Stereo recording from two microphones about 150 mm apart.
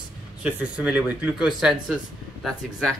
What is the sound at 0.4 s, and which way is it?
Speech, 10° right (ahead or behind).